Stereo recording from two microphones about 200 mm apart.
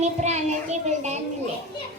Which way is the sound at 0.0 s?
35° right (ahead or behind).